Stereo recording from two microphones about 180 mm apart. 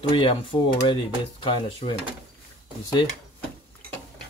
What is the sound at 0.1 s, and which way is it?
Speech, 30° left (ahead or behind).